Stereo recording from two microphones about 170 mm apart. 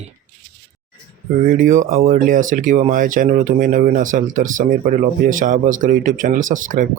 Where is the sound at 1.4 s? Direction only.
55° right (ahead or behind).